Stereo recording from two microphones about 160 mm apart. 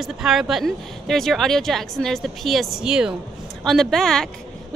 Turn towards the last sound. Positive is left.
turn(degrees=5)  # may be behind; listen again after turning